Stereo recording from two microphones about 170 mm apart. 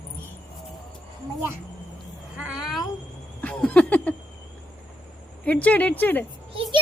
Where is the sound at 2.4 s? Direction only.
5° right (ahead or behind).